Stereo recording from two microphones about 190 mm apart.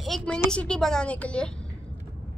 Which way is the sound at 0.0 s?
Centre (ahead or behind).